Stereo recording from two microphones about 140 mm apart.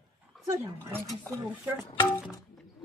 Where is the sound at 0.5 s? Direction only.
15° right (ahead or behind).